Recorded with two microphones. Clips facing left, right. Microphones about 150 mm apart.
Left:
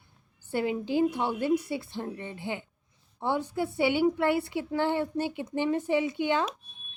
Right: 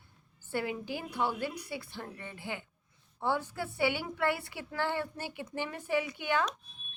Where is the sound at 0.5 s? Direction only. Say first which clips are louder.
Left 7 dB; 20° left (ahead or behind).